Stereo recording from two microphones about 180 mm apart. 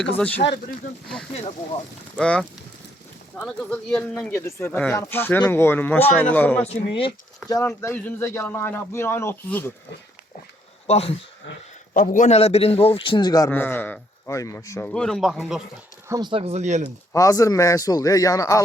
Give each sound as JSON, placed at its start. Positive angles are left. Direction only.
{"t": 0.4, "sound": "speech", "side_deg": 50}
{"t": 2.1, "sound": "a man's voice", "side_deg": 5}
{"t": 6.7, "sound": "a man's voice", "side_deg": 30}
{"t": 10.8, "sound": "a man's voice", "side_deg": 35}
{"t": 16.0, "sound": "speech", "side_deg": -20}
{"t": 17.1, "sound": "speech", "side_deg": 20}